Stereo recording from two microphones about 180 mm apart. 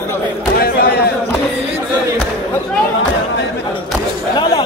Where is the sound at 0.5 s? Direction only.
60° left (ahead or behind).